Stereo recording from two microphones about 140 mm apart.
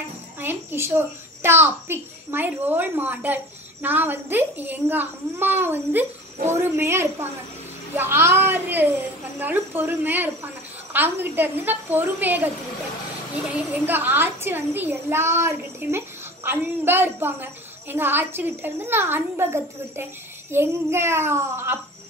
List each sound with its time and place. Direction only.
0.4 s a woman's voice: 15° right (ahead or behind)
13.5 s a woman's voice: 15° right (ahead or behind)